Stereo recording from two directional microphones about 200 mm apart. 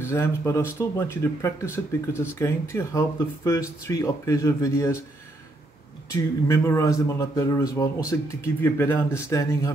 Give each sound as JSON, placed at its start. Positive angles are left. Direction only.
{"t": 0.0, "sound": "speech", "side_deg": 10}
{"t": 6.4, "sound": "speech", "side_deg": 15}